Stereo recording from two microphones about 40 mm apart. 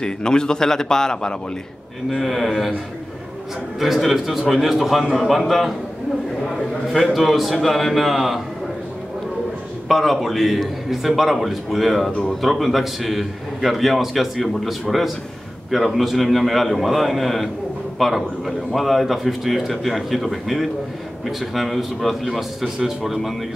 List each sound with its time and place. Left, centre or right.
0.0 s a man's voice: centre
2.0 s a man's voice: centre
3.8 s a man's voice: centre
9.8 s a man's voice: centre